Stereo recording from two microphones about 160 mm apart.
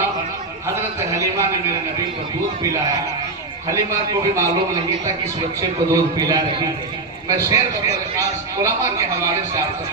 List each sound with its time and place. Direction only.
1.1 s a sound: 15° right (ahead or behind)
3.7 s speech: 20° right (ahead or behind)
5.9 s speech: 20° right (ahead or behind)